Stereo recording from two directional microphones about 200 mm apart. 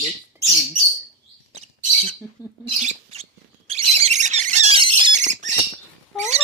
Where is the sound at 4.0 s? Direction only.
35° right (ahead or behind).